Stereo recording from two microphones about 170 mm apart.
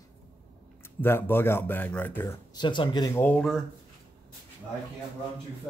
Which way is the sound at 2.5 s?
25° left (ahead or behind).